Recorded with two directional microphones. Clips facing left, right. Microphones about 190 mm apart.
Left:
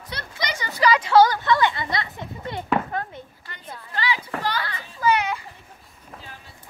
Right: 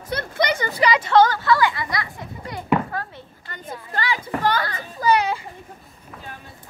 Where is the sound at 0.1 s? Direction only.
55° right (ahead or behind).